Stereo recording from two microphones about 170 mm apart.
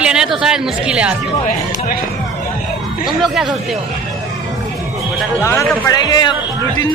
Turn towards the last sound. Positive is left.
turn(degrees=25)  # may be behind; listen again after turning